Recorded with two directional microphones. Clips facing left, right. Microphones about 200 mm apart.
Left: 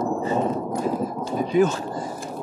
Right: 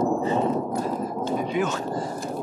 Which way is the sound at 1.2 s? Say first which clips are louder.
Left 6 dB; 35° left (ahead or behind).